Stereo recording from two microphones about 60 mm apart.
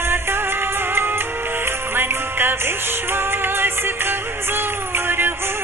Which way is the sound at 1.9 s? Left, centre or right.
Right.